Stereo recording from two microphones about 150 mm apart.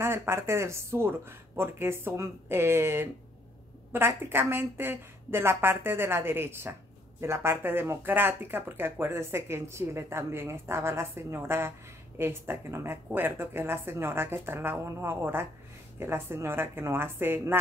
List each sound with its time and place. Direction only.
0.0 s a woman's voice: 15° right (ahead or behind)